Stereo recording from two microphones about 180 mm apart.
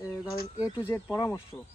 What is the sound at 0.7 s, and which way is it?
Speech, 15° left (ahead or behind).